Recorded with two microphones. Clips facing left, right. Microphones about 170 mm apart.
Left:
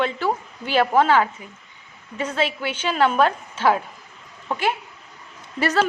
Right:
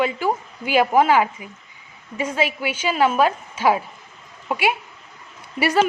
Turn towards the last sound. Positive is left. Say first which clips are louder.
# right 2 dB
turn(degrees=-10)  # may be behind; listen again after turning